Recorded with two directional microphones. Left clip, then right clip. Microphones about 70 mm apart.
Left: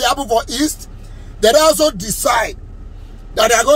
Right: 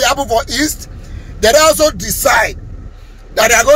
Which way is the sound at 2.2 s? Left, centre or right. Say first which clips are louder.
Right 4 dB; left.